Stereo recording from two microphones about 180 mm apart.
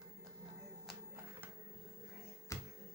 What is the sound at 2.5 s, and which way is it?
Music, 15° left (ahead or behind).